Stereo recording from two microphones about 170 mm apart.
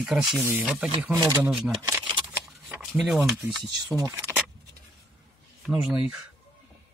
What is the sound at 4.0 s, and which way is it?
Vehicle, 20° right (ahead or behind).